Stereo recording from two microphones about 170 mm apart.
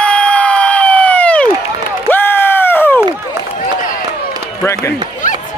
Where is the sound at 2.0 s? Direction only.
10° left (ahead or behind).